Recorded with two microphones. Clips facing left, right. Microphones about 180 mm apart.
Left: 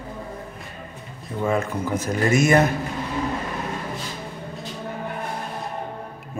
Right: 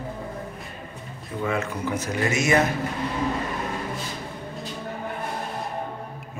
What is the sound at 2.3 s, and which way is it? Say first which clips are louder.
Speech: left 4 dB; 55° left (ahead or behind).